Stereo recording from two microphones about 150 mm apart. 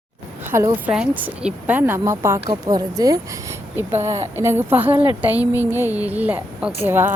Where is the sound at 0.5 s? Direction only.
20° right (ahead or behind).